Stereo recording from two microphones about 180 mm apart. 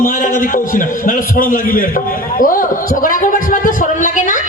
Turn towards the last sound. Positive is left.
turn(degrees=45)  # may be behind; listen again after turning